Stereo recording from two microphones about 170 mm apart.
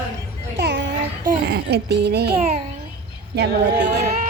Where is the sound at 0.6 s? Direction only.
90° right.